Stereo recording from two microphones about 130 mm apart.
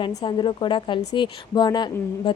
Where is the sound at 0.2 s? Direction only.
35° left (ahead or behind).